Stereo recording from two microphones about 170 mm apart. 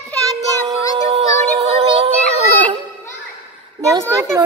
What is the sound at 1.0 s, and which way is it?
Music, 40° right (ahead or behind).